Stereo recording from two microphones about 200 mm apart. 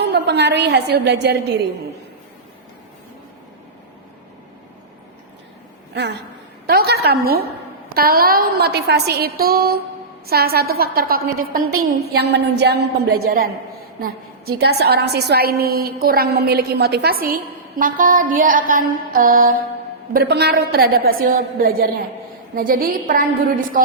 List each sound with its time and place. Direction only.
0.0 s a woman's voice: 60° right (ahead or behind)
5.9 s a woman's voice: 55° right (ahead or behind)
20.1 s a woman's voice: 55° right (ahead or behind)